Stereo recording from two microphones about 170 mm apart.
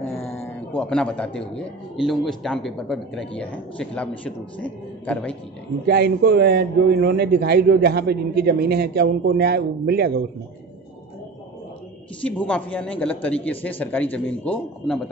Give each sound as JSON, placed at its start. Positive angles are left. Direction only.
{"t": 0.7, "sound": "a man's voice", "side_deg": 5}
{"t": 5.9, "sound": "a man's voice", "side_deg": -70}
{"t": 12.2, "sound": "a man's voice", "side_deg": 10}